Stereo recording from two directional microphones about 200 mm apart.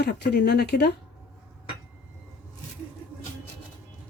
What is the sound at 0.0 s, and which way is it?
Speech, 50° left (ahead or behind).